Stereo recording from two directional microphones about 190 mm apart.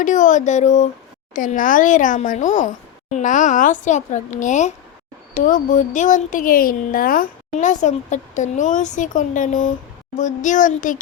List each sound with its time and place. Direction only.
0.0 s speech: 40° left (ahead or behind)